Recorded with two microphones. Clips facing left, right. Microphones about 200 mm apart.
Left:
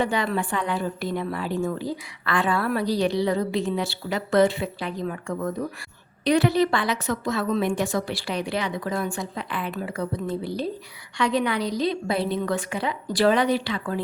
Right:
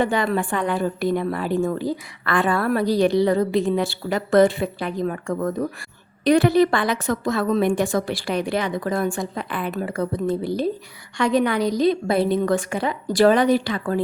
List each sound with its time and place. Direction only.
0.0 s a woman's voice: 50° right (ahead or behind)